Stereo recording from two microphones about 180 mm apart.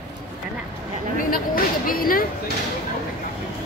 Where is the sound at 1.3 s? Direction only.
50° left (ahead or behind).